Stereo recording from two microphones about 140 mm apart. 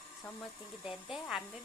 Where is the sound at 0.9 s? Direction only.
5° right (ahead or behind).